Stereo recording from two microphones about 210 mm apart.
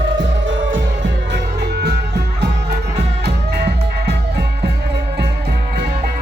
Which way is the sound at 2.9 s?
50° right (ahead or behind).